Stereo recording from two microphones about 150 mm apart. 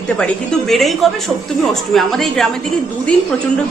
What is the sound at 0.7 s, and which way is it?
A woman's voice, centre (ahead or behind).